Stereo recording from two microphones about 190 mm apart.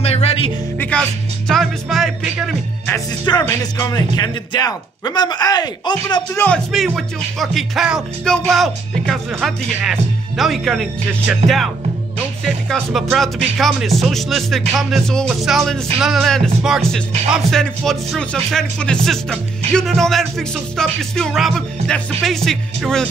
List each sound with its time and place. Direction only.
0.0 s music: 35° left (ahead or behind)
0.7 s music: 5° left (ahead or behind)
1.5 s speech: centre (ahead or behind)
3.7 s a man's voice: 20° left (ahead or behind)
6.3 s speech: 10° left (ahead or behind)
6.7 s speech: centre (ahead or behind)